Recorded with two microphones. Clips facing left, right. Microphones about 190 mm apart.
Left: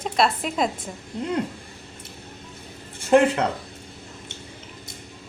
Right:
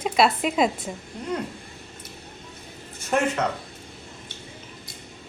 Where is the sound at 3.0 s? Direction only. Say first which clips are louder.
Left 6 dB; 30° left (ahead or behind).